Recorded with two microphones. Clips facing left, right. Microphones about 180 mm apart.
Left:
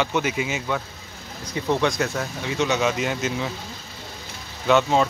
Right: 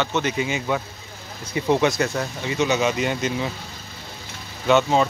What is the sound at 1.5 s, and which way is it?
Speech, 10° right (ahead or behind).